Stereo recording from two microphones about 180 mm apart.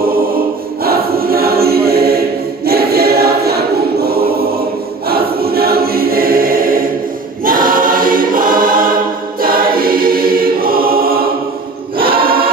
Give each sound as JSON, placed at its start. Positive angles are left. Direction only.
{"t": 0.8, "sound": "choir", "side_deg": -55}